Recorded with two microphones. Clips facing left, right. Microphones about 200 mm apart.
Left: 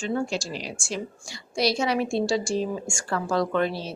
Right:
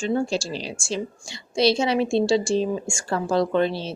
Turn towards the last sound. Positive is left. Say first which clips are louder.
# right 3 dB
turn(degrees=-25)  # may be behind; listen again after turning